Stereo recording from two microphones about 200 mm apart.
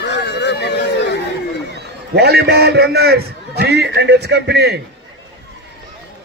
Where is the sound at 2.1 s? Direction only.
55° right (ahead or behind).